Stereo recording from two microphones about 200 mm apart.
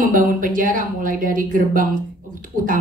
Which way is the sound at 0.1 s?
45° right (ahead or behind).